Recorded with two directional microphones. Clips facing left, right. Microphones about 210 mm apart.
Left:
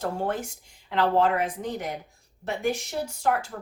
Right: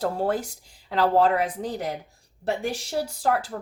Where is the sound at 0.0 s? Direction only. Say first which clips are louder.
Right 3 dB; 35° right (ahead or behind).